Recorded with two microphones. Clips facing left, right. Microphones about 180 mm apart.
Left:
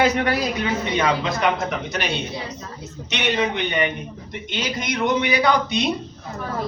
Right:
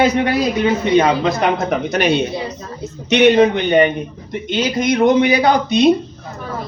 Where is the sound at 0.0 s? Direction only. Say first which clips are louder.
Right 5 dB; 20° right (ahead or behind); by 1.5 s 35° right (ahead or behind).